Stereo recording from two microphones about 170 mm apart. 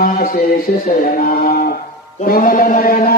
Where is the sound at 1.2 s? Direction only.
60° left (ahead or behind).